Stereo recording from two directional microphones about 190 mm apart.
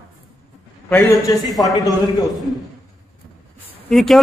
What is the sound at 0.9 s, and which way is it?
Speech, 10° left (ahead or behind).